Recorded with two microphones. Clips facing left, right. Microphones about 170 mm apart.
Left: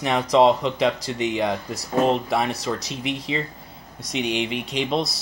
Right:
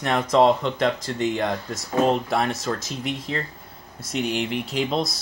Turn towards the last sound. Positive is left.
turn(degrees=0)  # may be behind; listen again after turning